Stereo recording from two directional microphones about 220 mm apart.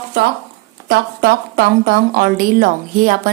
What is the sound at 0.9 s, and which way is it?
Speech, 45° right (ahead or behind).